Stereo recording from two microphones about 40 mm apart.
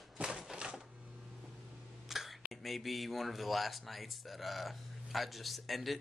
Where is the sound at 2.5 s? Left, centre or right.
Centre.